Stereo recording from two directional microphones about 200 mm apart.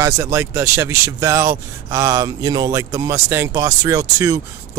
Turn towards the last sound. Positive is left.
turn(degrees=-15)  # may be behind; listen again after turning